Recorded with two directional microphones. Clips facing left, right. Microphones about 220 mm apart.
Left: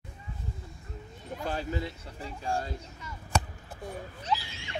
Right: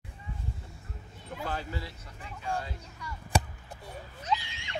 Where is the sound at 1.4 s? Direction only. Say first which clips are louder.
Left 4 dB; 20° left (ahead or behind).